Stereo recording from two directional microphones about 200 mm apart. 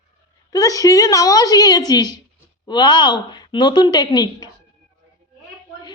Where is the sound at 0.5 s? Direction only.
15° left (ahead or behind).